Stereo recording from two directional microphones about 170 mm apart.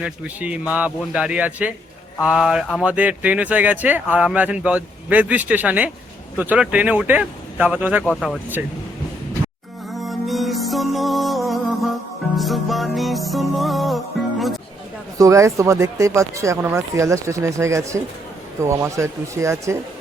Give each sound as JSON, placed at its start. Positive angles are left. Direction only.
{"t": 0.0, "sound": "speech", "side_deg": -5}
{"t": 8.0, "sound": "speech", "side_deg": 0}
{"t": 9.9, "sound": "music", "side_deg": 0}
{"t": 15.2, "sound": "speech", "side_deg": -15}